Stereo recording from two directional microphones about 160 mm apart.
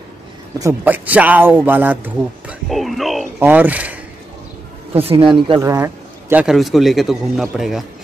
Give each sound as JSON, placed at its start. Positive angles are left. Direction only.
{"t": 0.6, "sound": "speech", "side_deg": -15}
{"t": 2.7, "sound": "speech", "side_deg": 0}
{"t": 4.9, "sound": "speech", "side_deg": -35}
{"t": 5.6, "sound": "a man's voice", "side_deg": -20}
{"t": 6.4, "sound": "a man's voice", "side_deg": 0}